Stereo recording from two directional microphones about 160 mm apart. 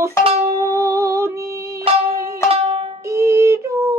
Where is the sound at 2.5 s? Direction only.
35° right (ahead or behind).